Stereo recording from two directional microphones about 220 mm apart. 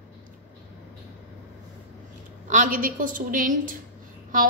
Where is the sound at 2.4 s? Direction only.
35° right (ahead or behind).